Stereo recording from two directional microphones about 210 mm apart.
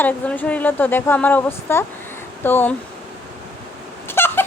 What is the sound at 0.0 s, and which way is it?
Speech, 5° left (ahead or behind).